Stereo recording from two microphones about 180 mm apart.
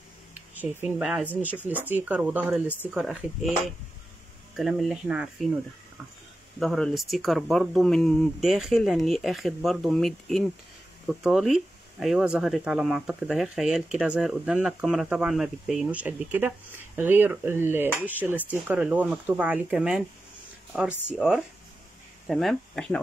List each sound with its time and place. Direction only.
0.3 s speech: 10° right (ahead or behind)
4.6 s speech: centre (ahead or behind)
6.6 s speech: centre (ahead or behind)